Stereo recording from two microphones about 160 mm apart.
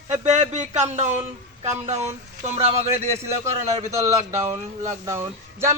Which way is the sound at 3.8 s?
20° right (ahead or behind).